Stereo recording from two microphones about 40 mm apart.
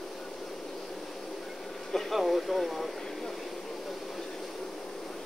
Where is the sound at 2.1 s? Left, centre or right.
Centre.